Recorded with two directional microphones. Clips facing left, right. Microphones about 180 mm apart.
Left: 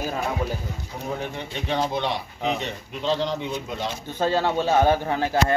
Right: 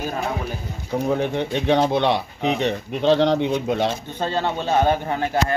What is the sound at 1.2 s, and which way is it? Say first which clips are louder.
Speech: right 9 dB; 70° right (ahead or behind).